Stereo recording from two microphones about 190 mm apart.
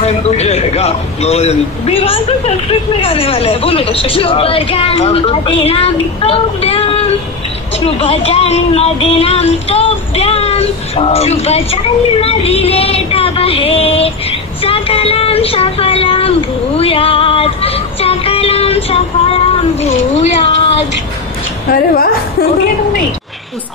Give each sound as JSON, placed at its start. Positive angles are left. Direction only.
{"t": 0.0, "sound": "speech", "side_deg": 35}
{"t": 14.6, "sound": "a sound", "side_deg": 30}
{"t": 21.7, "sound": "a woman's voice", "side_deg": 50}